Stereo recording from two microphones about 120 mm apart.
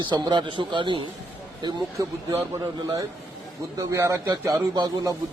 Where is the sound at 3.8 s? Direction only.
25° right (ahead or behind).